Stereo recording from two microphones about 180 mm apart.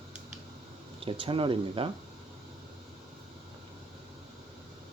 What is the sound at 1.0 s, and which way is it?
Speech, 30° right (ahead or behind).